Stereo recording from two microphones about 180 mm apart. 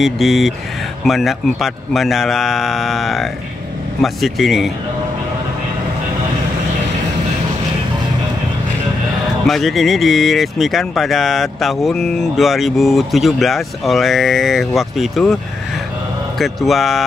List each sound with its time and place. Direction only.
0.0 s speech: centre (ahead or behind)
9.5 s speech: centre (ahead or behind)
16.3 s speech: centre (ahead or behind)